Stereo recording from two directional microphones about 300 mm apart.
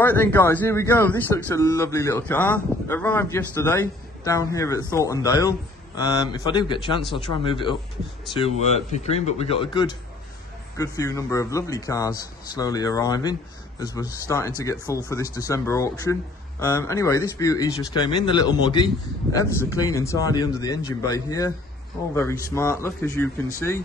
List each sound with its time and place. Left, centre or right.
0.0 s a man's voice: centre